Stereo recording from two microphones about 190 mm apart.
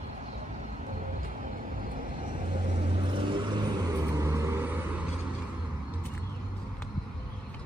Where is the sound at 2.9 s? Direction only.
25° right (ahead or behind).